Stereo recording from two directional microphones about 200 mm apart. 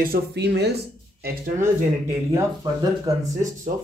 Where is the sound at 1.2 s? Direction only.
45° right (ahead or behind).